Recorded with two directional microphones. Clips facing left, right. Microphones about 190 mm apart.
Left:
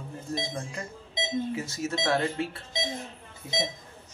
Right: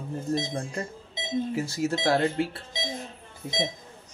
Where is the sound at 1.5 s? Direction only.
35° right (ahead or behind).